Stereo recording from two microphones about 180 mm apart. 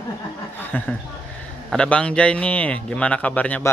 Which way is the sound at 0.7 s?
10° left (ahead or behind).